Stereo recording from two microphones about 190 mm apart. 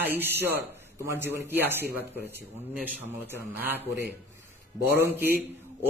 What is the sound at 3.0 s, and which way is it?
Speech, 10° right (ahead or behind).